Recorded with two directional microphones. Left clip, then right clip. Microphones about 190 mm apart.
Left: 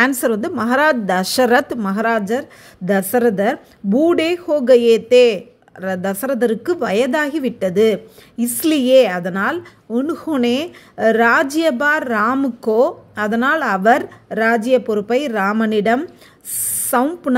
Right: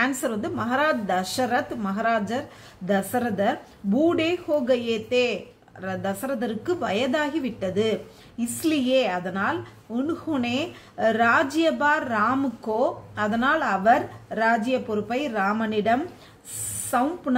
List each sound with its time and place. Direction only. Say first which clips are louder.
0.0 s a woman's voice: left 9 dB; 45° left (ahead or behind)